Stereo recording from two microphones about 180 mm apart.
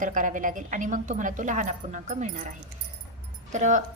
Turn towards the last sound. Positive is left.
turn(degrees=-45)  # may be behind; listen again after turning